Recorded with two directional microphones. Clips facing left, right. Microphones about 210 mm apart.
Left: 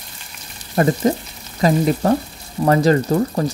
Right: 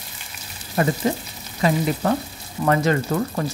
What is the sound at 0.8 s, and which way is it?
Speech, 40° left (ahead or behind).